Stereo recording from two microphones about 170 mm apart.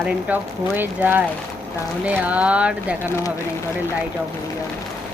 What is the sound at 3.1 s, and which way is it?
Speech, 15° left (ahead or behind).